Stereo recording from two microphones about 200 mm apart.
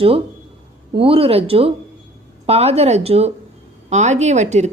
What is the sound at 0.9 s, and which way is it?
Speech, 25° right (ahead or behind).